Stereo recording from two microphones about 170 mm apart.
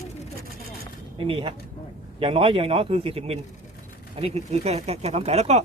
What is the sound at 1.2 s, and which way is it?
A man's voice, 30° right (ahead or behind).